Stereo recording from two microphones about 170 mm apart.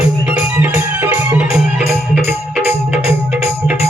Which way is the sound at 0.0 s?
10° right (ahead or behind).